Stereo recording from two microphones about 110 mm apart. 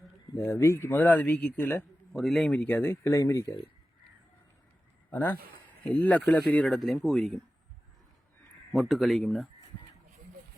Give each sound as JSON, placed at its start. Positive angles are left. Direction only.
{"t": 0.3, "sound": "speech", "side_deg": 20}
{"t": 2.1, "sound": "speech", "side_deg": 0}
{"t": 3.0, "sound": "speech", "side_deg": 30}
{"t": 5.1, "sound": "speech", "side_deg": 15}
{"t": 8.7, "sound": "speech", "side_deg": 0}